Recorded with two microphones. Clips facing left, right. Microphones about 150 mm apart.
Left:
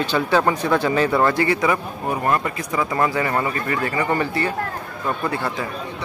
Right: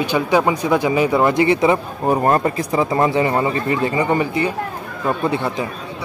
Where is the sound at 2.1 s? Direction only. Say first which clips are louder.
Right 6 dB; 35° right (ahead or behind).